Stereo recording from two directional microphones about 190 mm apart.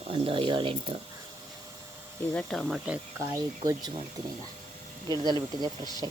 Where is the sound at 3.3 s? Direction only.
20° right (ahead or behind).